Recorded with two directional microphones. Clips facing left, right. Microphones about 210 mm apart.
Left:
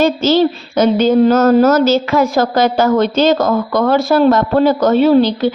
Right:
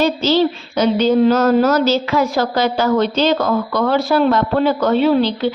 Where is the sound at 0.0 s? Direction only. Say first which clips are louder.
Left 3 dB; 50° left (ahead or behind).